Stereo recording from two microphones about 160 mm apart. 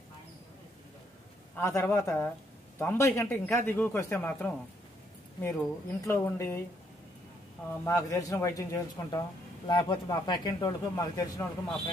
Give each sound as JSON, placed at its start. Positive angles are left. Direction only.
{"t": 1.6, "sound": "a man's voice", "side_deg": 15}
{"t": 6.0, "sound": "a man's voice", "side_deg": 15}
{"t": 7.8, "sound": "speech", "side_deg": 20}